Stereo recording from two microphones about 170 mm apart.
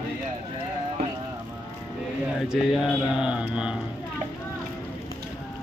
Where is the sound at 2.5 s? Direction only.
Centre (ahead or behind).